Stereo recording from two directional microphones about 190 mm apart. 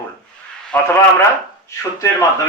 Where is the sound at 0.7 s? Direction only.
5° left (ahead or behind).